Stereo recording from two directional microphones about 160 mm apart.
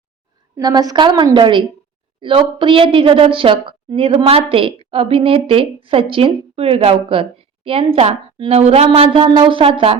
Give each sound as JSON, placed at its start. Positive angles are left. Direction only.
{"t": 0.5, "sound": "a woman's voice", "side_deg": -25}